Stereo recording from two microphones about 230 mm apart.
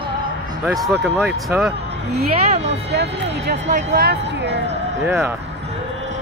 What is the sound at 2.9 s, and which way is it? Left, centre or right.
Speech, right.